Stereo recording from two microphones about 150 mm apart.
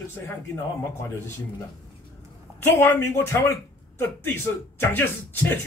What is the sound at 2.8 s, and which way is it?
Speech, 15° left (ahead or behind).